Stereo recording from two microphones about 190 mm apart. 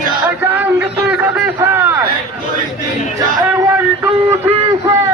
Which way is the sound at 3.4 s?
10° right (ahead or behind).